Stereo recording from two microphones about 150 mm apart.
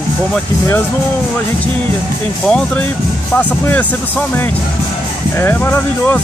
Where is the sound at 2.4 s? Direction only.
5° left (ahead or behind).